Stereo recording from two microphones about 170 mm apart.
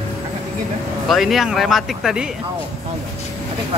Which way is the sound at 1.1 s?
Centre (ahead or behind).